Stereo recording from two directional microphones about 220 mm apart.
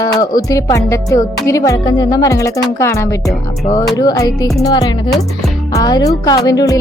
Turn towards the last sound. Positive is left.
turn(degrees=15)  # may be behind; listen again after turning